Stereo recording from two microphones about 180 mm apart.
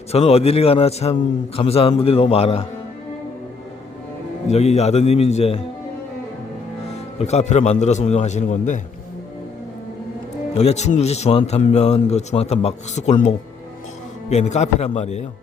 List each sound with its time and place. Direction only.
0.1 s a man's voice: 35° left (ahead or behind)
4.4 s a man's voice: 35° left (ahead or behind)
6.9 s a man's voice: 35° left (ahead or behind)
10.5 s a man's voice: 35° left (ahead or behind)